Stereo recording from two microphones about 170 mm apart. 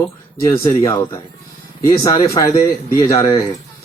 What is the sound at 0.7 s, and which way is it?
Speech, 20° left (ahead or behind).